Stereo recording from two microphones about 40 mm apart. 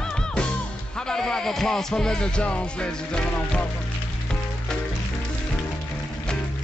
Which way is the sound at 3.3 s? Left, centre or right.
Left.